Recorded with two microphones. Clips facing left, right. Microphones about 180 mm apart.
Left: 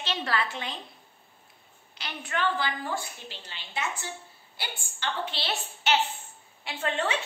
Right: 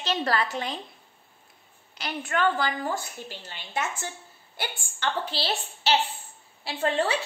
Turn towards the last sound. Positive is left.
turn(degrees=-35)  # may be behind; listen again after turning